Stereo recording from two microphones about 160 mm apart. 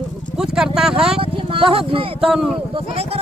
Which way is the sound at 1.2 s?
35° right (ahead or behind).